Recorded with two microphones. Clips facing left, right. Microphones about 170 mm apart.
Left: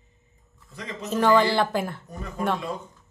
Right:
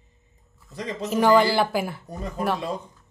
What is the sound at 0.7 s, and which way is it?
Speech, 35° right (ahead or behind).